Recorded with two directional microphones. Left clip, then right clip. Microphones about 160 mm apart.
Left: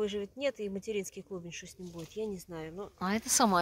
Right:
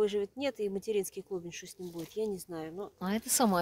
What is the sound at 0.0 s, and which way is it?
Speech, 60° right (ahead or behind).